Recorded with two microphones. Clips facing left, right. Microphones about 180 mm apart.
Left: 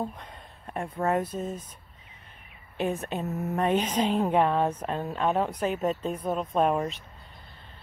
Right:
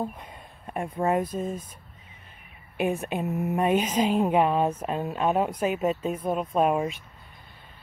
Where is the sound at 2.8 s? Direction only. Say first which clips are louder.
Right 2 dB; 10° right (ahead or behind).